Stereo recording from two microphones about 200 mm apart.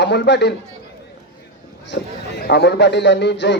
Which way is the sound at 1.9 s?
60° left (ahead or behind).